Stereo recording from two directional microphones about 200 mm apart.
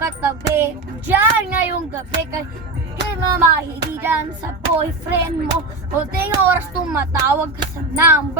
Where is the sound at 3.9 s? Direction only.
10° right (ahead or behind).